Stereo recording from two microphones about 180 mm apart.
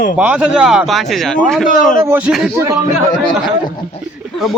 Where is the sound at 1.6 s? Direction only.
45° left (ahead or behind).